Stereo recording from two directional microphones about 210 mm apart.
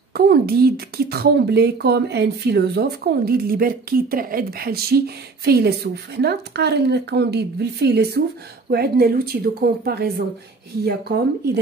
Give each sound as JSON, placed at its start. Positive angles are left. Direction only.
{"t": 0.1, "sound": "speech", "side_deg": -45}